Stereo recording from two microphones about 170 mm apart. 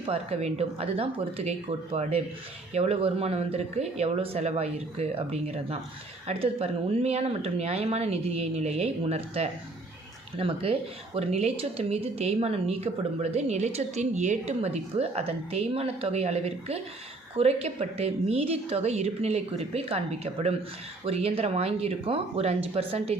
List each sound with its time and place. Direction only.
0.0 s speech: 35° right (ahead or behind)